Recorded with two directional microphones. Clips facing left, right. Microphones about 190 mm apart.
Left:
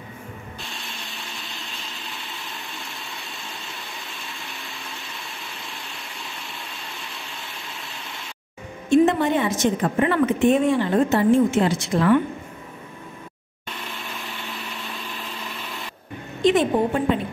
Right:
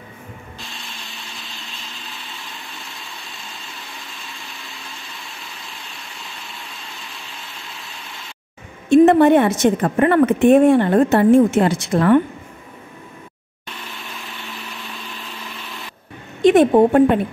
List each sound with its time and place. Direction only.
8.9 s a woman's voice: 60° right (ahead or behind)
16.4 s a woman's voice: 60° right (ahead or behind)